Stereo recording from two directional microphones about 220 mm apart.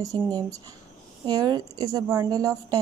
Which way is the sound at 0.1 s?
15° right (ahead or behind).